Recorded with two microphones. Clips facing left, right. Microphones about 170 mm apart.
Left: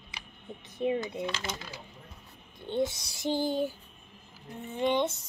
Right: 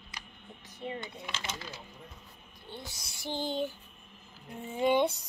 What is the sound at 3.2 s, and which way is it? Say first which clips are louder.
Speech: left 5 dB; 10° left (ahead or behind).